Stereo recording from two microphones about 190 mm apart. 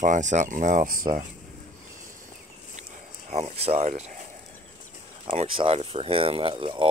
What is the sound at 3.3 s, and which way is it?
Speech, 35° right (ahead or behind).